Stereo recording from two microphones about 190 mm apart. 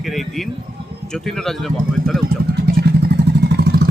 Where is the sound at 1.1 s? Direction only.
Centre (ahead or behind).